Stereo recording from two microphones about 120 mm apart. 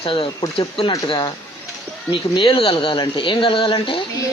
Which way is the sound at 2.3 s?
45° left (ahead or behind).